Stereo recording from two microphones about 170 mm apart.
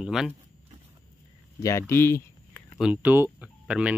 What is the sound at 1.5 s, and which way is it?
Speech, 15° left (ahead or behind).